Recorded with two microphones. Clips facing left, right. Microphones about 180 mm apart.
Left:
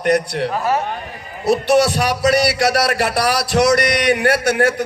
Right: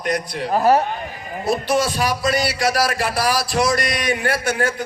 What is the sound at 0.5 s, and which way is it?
Speech, 40° right (ahead or behind).